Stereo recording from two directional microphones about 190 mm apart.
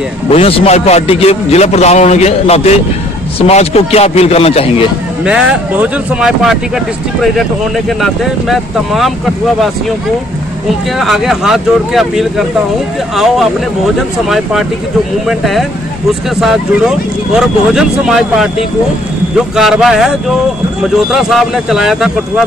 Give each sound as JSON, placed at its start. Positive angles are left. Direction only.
{"t": 0.3, "sound": "a man's voice", "side_deg": 30}
{"t": 5.2, "sound": "speech", "side_deg": -5}
{"t": 11.0, "sound": "speech", "side_deg": 0}
{"t": 19.5, "sound": "speech", "side_deg": 0}